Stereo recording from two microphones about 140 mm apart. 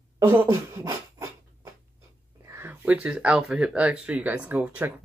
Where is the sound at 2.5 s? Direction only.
15° right (ahead or behind).